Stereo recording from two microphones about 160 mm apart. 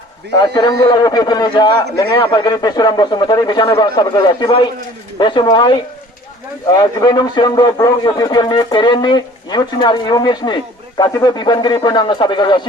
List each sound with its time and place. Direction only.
0.3 s speech: 30° left (ahead or behind)